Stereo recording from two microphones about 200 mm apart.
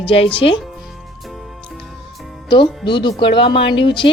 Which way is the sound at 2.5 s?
25° left (ahead or behind).